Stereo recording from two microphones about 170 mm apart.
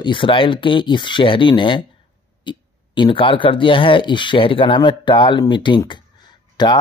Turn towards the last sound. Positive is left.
turn(degrees=25)  # may be behind; listen again after turning